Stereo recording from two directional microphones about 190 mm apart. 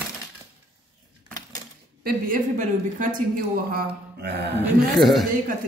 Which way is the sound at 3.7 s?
60° right (ahead or behind).